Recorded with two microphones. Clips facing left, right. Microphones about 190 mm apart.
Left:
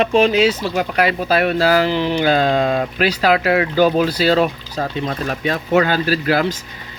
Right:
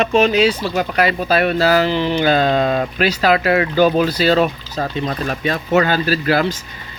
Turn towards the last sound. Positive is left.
turn(degrees=15)  # may be behind; listen again after turning